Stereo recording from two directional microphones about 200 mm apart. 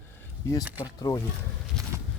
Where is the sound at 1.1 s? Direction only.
25° left (ahead or behind).